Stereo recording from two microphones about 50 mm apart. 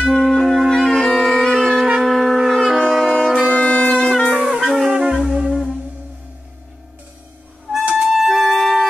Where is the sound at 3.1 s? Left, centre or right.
Centre.